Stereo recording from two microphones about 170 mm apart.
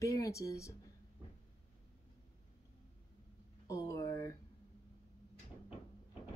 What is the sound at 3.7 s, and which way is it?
Speech, 20° left (ahead or behind).